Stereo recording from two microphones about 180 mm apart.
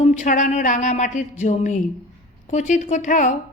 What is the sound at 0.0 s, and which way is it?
A woman's voice, 40° left (ahead or behind).